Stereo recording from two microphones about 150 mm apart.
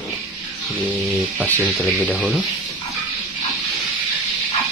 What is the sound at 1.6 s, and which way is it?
Speech, centre (ahead or behind).